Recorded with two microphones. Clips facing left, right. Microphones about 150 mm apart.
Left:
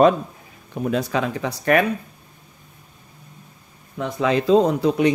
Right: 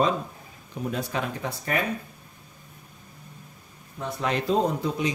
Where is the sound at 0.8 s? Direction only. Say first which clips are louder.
Left 7 dB; 85° left.